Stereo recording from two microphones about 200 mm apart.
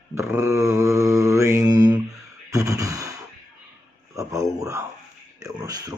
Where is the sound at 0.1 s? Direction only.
15° right (ahead or behind).